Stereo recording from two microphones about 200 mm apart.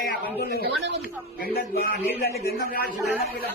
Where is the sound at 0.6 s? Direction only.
60° right (ahead or behind).